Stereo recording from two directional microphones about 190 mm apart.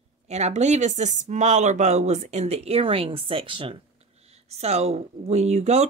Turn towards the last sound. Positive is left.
turn(degrees=-35)  # may be behind; listen again after turning